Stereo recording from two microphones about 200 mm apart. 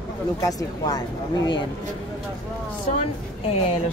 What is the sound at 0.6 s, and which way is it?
Speech, 20° left (ahead or behind).